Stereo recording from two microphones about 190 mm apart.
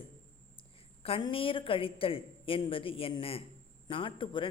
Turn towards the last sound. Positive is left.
turn(degrees=25)  # may be behind; listen again after turning